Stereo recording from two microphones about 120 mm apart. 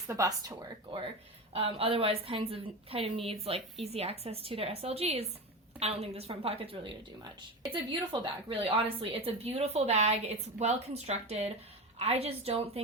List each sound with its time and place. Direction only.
0.1 s speech: 30° right (ahead or behind)
1.5 s a woman's voice: 50° right (ahead or behind)
8.2 s speech: 50° right (ahead or behind)